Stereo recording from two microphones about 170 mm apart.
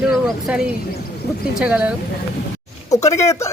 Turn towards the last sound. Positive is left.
turn(degrees=15)  # may be behind; listen again after turning